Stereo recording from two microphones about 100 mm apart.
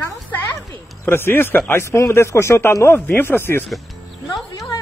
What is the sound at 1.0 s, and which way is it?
Speech, 20° left (ahead or behind).